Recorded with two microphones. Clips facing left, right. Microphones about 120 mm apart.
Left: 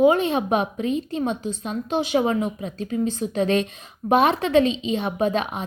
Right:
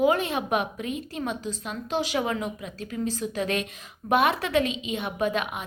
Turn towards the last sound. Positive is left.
turn(degrees=30)  # may be behind; listen again after turning